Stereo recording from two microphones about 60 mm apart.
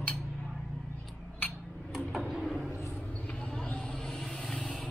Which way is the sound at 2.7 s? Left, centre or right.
Left.